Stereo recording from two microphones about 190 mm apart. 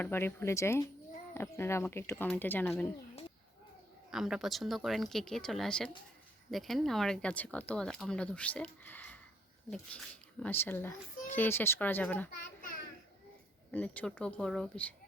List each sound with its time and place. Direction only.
0.0 s a child's voice: 10° left (ahead or behind)
4.1 s a child's voice: centre (ahead or behind)
12.4 s a child's voice: 45° left (ahead or behind)
13.7 s a child's voice: 5° left (ahead or behind)